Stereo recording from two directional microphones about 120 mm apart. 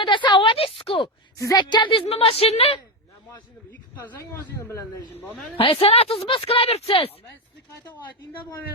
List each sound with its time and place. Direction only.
0.0 s a woman's voice: 40° left (ahead or behind)
1.4 s a woman's voice: 30° left (ahead or behind); by 2.7 s 55° left (ahead or behind)
3.2 s a sound: 15° left (ahead or behind)
4.2 s a man's voice: 20° left (ahead or behind)
5.5 s a woman's voice: 50° left (ahead or behind)